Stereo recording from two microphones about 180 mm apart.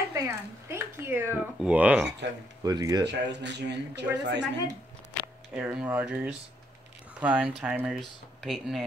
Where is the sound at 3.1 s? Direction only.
70° right (ahead or behind).